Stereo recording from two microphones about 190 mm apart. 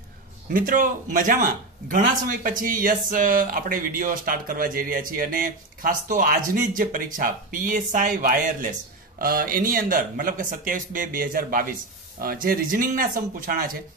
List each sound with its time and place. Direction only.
0.5 s a man's voice: 45° right (ahead or behind)